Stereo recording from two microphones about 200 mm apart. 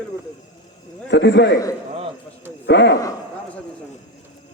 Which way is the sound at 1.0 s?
60° left (ahead or behind).